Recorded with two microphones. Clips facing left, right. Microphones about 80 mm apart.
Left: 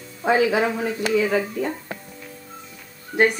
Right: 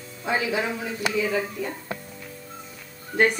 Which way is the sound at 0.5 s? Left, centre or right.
Left.